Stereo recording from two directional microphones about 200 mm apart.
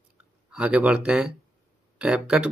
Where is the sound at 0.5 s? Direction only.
5° right (ahead or behind).